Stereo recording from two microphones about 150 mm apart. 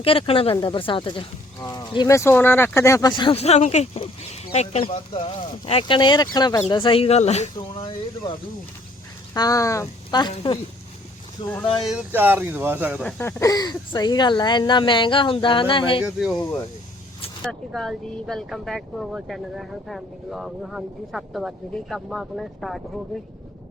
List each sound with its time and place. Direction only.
0.0 s speech: 40° left (ahead or behind)
2.1 s speech: 15° left (ahead or behind)
3.3 s speech: 45° left (ahead or behind)
7.5 s speech: 30° left (ahead or behind)
9.3 s speech: 25° left (ahead or behind)
11.4 s speech: 35° left (ahead or behind)
11.9 s speech: 10° right (ahead or behind)
13.0 s speech: 5° left (ahead or behind)
13.2 s speech: 25° left (ahead or behind)
16.0 s speech: 5° right (ahead or behind)
16.4 s speech: 15° left (ahead or behind)
17.7 s speech: centre (ahead or behind)